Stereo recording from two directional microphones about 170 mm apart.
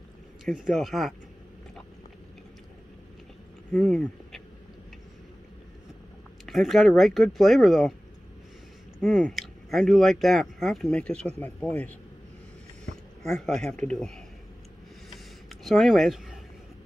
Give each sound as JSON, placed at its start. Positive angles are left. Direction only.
{"t": 0.5, "sound": "speech", "side_deg": 0}
{"t": 3.7, "sound": "speech", "side_deg": 5}
{"t": 6.4, "sound": "speech", "side_deg": 0}
{"t": 9.0, "sound": "speech", "side_deg": 0}
{"t": 13.2, "sound": "speech", "side_deg": 0}
{"t": 15.6, "sound": "speech", "side_deg": 0}